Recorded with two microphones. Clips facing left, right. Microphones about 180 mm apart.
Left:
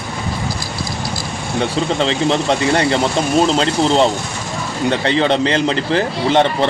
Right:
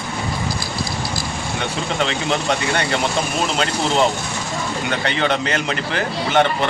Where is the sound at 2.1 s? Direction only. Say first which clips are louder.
Left 5 dB; 30° left (ahead or behind).